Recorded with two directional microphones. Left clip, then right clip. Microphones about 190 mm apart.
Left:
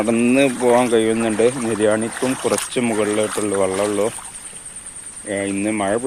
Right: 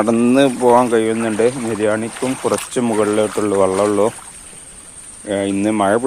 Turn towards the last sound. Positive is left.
turn(degrees=-25)  # may be behind; listen again after turning